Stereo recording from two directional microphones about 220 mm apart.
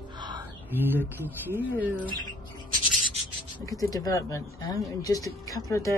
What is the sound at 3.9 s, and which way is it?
A woman's voice, 15° left (ahead or behind).